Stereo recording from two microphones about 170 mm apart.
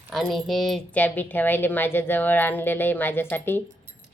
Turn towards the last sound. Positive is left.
turn(degrees=10)  # may be behind; listen again after turning